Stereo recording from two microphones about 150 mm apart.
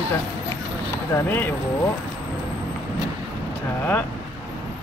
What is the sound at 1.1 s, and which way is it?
Speech, 15° left (ahead or behind).